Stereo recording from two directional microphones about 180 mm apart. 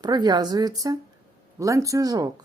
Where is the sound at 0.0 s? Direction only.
25° right (ahead or behind).